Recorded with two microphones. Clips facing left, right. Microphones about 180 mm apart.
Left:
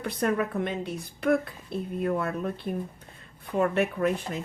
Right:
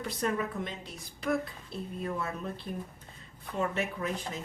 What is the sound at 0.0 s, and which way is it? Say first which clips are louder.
Speech: left 5 dB; 60° left (ahead or behind).